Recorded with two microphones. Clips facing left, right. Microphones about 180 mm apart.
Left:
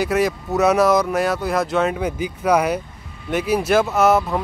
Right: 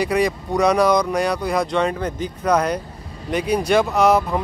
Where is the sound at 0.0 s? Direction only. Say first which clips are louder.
Even; centre (ahead or behind).